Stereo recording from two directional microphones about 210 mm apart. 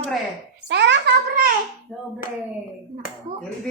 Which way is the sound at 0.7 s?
55° right (ahead or behind).